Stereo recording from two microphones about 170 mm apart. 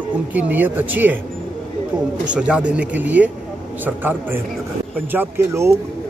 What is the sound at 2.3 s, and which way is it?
Speech, 5° right (ahead or behind).